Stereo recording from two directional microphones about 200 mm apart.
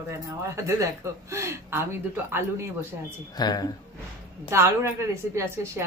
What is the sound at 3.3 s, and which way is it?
Speech, 20° left (ahead or behind).